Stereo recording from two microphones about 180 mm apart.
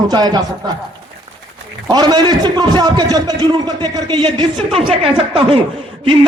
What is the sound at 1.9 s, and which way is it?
A man's voice, 25° right (ahead or behind).